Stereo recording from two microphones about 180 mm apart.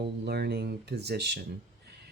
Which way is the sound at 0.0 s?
65° right (ahead or behind).